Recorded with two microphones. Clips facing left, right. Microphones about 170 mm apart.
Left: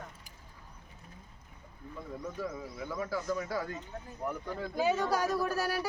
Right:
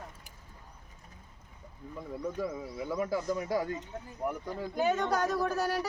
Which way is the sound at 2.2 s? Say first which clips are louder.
Right 4 dB; 15° right (ahead or behind).